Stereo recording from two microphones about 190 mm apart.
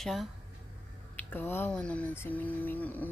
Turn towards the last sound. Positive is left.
turn(degrees=10)  # may be behind; listen again after turning